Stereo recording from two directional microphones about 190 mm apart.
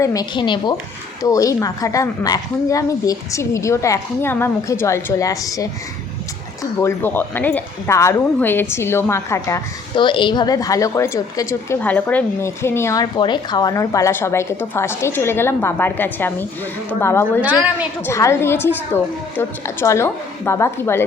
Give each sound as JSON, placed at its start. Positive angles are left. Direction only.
{"t": 0.0, "sound": "a woman's voice", "side_deg": 20}
{"t": 9.9, "sound": "a woman's voice", "side_deg": 25}
{"t": 17.4, "sound": "a woman's voice", "side_deg": -10}
{"t": 18.0, "sound": "a woman's voice", "side_deg": 15}